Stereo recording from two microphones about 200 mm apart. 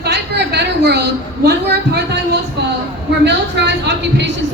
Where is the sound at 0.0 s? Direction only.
55° right (ahead or behind).